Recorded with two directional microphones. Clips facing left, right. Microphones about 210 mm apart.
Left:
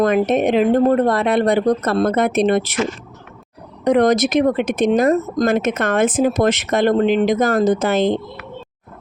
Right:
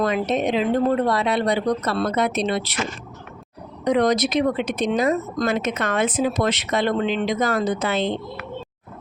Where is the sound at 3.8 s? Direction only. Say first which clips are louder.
Left 5 dB; 50° left (ahead or behind).